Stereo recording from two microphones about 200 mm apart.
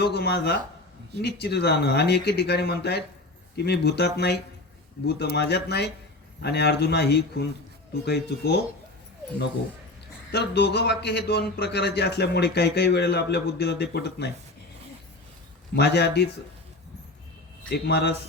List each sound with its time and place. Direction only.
0.0 s speech: 55° left (ahead or behind)
10.3 s speech: 55° left (ahead or behind)
15.7 s speech: 55° left (ahead or behind)
17.7 s speech: 55° left (ahead or behind)